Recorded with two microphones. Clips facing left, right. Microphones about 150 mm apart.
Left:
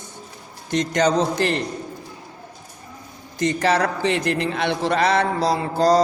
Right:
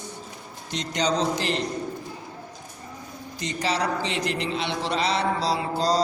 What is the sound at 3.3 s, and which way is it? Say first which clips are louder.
A man's voice: left 7 dB; 55° left (ahead or behind).